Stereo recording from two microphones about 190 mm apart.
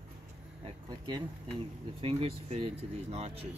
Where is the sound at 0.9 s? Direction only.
25° right (ahead or behind).